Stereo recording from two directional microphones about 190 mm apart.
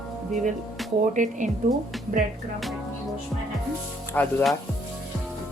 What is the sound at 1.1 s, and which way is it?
Speech, 40° right (ahead or behind).